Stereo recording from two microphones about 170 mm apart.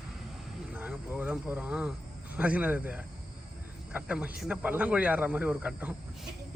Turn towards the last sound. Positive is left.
turn(degrees=-5)  # may be behind; listen again after turning